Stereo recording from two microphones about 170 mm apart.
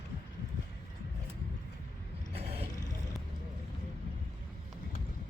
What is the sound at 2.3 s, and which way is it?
Roaring cats, 35° right (ahead or behind).